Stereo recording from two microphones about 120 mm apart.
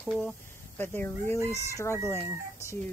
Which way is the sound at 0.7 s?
15° left (ahead or behind).